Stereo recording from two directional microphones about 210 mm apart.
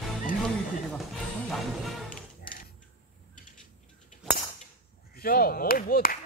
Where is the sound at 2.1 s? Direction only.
40° left (ahead or behind).